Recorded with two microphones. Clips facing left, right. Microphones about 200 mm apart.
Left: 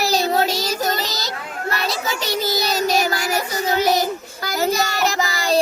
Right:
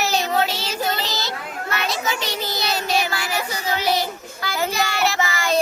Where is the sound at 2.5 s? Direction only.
40° left (ahead or behind).